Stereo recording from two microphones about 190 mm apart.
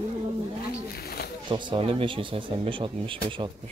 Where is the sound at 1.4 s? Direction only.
25° right (ahead or behind).